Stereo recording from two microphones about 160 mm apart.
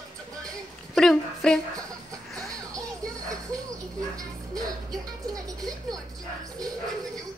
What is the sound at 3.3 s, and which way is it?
Music, 20° right (ahead or behind).